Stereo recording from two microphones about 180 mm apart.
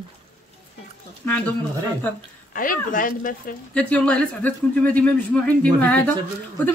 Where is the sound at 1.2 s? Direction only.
5° left (ahead or behind).